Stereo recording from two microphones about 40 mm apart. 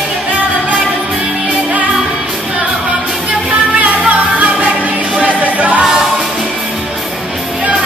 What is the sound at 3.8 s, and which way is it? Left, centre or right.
Music, right.